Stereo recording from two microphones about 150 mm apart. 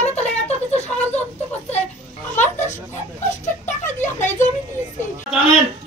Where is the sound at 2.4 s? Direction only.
50° left (ahead or behind).